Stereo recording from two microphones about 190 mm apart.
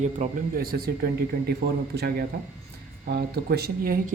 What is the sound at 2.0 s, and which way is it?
Speech, 50° right (ahead or behind).